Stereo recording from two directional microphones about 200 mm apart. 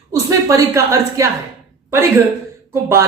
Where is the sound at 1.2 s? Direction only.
15° right (ahead or behind).